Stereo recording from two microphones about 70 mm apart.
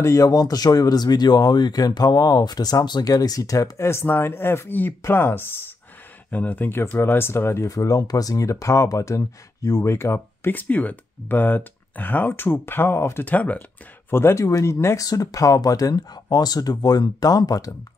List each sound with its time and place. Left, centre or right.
0.0 s speech: left
0.3 s speech: left
7.7 s speech: left
13.2 s speech: left
14.1 s speech: left
14.4 s speech: left
15.0 s speech: left